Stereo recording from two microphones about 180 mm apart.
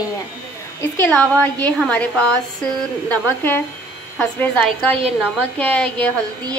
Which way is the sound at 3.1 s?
10° left (ahead or behind).